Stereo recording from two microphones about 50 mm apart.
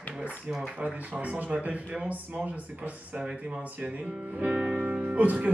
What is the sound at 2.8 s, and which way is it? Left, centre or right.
Speech, right.